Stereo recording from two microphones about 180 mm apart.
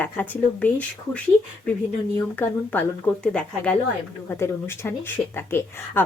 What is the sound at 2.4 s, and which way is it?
Speech, 10° left (ahead or behind).